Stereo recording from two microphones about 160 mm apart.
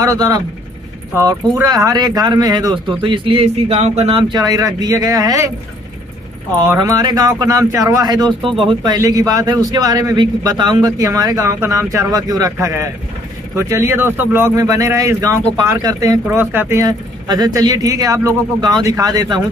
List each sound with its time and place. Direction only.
0.0 s a man's voice: 20° right (ahead or behind)
1.6 s a man's voice: 20° right (ahead or behind)
6.8 s a man's voice: 25° right (ahead or behind)